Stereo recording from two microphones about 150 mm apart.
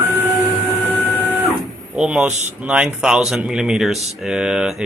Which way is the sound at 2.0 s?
5° right (ahead or behind).